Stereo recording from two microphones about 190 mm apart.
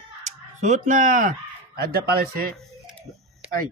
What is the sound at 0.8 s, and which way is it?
Speech, 45° right (ahead or behind).